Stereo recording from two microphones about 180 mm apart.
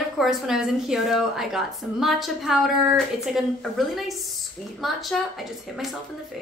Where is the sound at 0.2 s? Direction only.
Centre (ahead or behind).